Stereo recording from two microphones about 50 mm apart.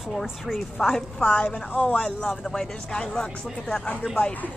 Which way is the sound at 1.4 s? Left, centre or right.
Left.